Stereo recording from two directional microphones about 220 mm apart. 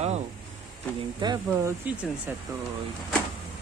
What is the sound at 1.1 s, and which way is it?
Speech, 20° right (ahead or behind).